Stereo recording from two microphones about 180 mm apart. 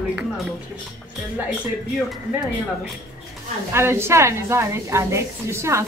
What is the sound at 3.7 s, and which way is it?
A woman's voice, 15° right (ahead or behind).